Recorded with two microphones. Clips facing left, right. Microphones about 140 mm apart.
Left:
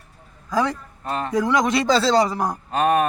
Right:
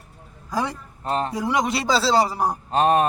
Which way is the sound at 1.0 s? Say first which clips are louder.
Right 2 dB; 30° right (ahead or behind).